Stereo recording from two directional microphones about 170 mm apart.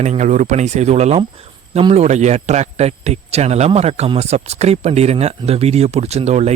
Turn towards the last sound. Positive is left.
turn(degrees=-40)  # may be behind; listen again after turning